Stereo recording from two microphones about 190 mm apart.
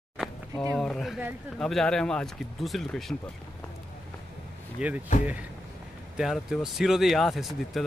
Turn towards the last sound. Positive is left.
turn(degrees=0)  # may be behind; listen again after turning